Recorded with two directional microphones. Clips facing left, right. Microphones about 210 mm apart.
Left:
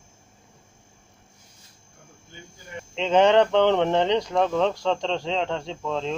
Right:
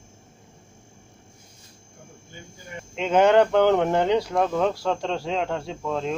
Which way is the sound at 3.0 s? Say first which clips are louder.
Even; 5° right (ahead or behind).